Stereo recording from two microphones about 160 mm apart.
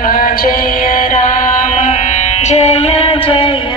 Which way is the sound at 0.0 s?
65° left (ahead or behind).